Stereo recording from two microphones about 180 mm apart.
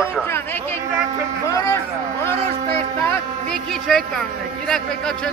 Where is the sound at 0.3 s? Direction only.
15° left (ahead or behind).